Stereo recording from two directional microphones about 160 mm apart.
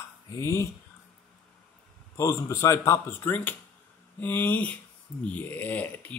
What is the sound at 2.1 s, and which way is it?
Speech, 20° left (ahead or behind).